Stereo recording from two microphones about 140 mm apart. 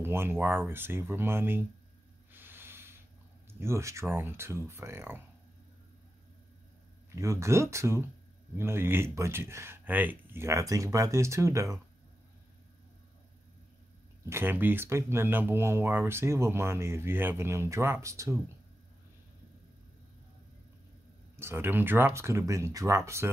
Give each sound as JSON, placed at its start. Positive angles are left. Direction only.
{"t": 0.0, "sound": "speech", "side_deg": -15}
{"t": 2.3, "sound": "a sound", "side_deg": -15}
{"t": 3.5, "sound": "speech", "side_deg": -20}
{"t": 7.1, "sound": "speech", "side_deg": -20}
{"t": 14.3, "sound": "speech", "side_deg": -15}
{"t": 21.4, "sound": "speech", "side_deg": -15}